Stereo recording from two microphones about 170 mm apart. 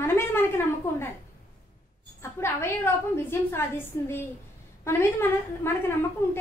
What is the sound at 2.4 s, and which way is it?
A woman's voice, 15° left (ahead or behind).